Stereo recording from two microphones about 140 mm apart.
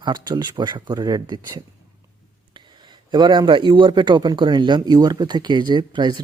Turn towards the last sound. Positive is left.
turn(degrees=-35)  # may be behind; listen again after turning